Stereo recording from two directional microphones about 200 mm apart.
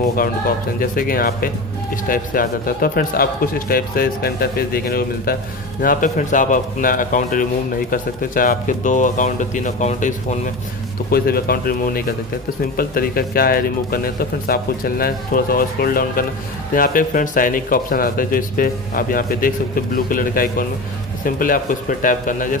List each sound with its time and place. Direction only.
0.7 s a man's voice: 45° left (ahead or behind)